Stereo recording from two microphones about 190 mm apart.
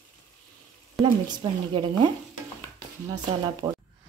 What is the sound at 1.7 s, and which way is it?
Speech, 25° right (ahead or behind).